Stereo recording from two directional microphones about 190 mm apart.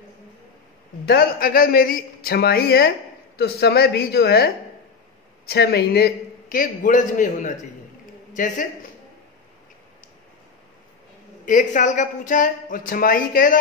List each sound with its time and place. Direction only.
1.0 s a woman's voice: 55° left (ahead or behind)
5.5 s speech: 55° left (ahead or behind)
11.4 s speech: 45° left (ahead or behind)